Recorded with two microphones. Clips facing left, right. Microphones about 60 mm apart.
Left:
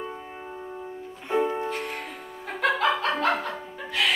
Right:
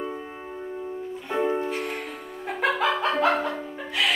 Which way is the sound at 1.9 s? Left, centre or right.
Centre.